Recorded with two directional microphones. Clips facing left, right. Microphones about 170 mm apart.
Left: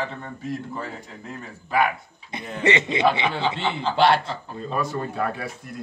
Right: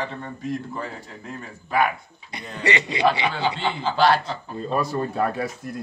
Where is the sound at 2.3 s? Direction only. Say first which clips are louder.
Left 3 dB; 20° left (ahead or behind).